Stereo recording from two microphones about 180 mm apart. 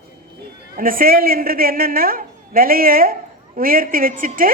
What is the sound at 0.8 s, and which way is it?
A man's voice, 50° right (ahead or behind).